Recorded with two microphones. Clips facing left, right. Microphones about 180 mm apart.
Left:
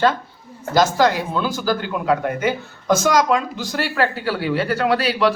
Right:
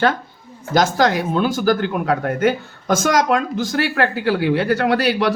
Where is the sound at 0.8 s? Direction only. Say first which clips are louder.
Even; 60° right (ahead or behind).